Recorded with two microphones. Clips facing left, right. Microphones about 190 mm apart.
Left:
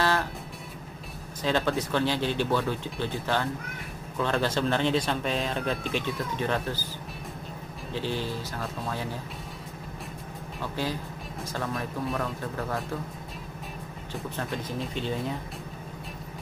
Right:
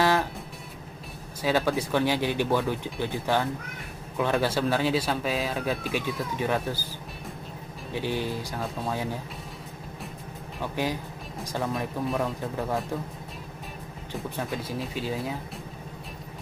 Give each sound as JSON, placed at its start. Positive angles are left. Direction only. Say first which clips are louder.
{"t": 1.4, "sound": "speech", "louder": "right 1 dB", "side_deg": -10}
{"t": 7.9, "sound": "speech", "louder": "right 2 dB", "side_deg": -15}
{"t": 10.6, "sound": "speech", "louder": "right 2 dB", "side_deg": -15}
{"t": 14.3, "sound": "speech", "louder": "right 1 dB", "side_deg": -5}